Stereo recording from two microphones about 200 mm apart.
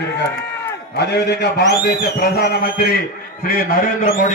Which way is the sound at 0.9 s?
55° left (ahead or behind).